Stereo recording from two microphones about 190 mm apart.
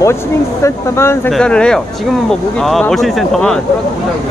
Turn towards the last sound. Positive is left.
turn(degrees=0)  # may be behind; listen again after turning